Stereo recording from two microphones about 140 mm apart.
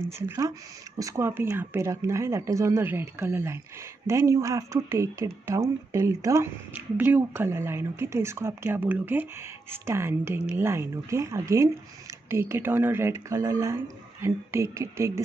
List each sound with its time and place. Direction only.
0.9 s speech: 20° right (ahead or behind)